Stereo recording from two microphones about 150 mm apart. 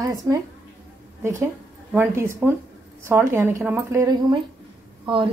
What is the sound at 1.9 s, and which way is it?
Speech, 15° right (ahead or behind).